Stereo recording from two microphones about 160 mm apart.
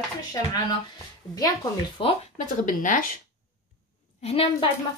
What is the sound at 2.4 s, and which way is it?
Speech, 55° left (ahead or behind).